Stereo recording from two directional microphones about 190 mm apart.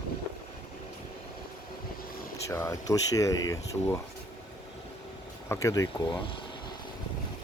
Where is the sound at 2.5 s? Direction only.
15° left (ahead or behind).